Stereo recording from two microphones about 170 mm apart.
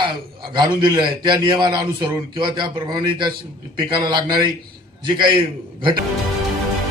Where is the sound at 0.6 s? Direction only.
25° right (ahead or behind).